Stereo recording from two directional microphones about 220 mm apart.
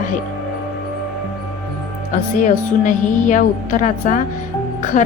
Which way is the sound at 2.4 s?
35° left (ahead or behind).